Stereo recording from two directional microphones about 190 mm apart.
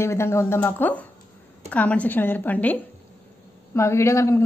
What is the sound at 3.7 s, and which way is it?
Speech, 15° left (ahead or behind).